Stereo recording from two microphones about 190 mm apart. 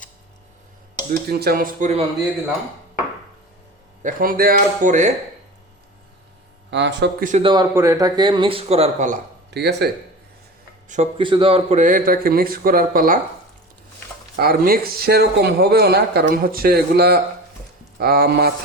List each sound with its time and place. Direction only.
1.3 s a man's voice: 55° right (ahead or behind)
4.0 s a man's voice: 50° right (ahead or behind)
6.7 s speech: 65° right (ahead or behind)
7.4 s speech: 20° right (ahead or behind); by 9.2 s 40° right (ahead or behind)
9.5 s speech: 60° right (ahead or behind)
10.8 s speech: 40° right (ahead or behind)
11.2 s a man's voice: 25° right (ahead or behind); by 13.1 s 45° right (ahead or behind)
14.3 s speech: 50° right (ahead or behind)